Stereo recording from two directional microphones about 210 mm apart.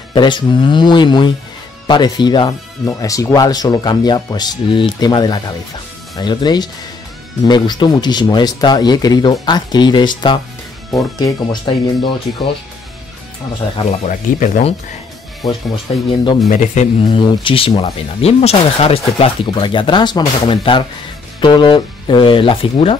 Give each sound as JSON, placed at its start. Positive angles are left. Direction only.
{"t": 0.1, "sound": "speech", "side_deg": 20}
{"t": 13.7, "sound": "speech", "side_deg": 35}
{"t": 16.4, "sound": "speech", "side_deg": 35}
{"t": 17.0, "sound": "speech", "side_deg": 25}